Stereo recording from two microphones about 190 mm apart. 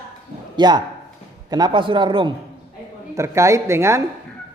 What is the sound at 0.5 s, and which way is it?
A man's voice, 20° right (ahead or behind).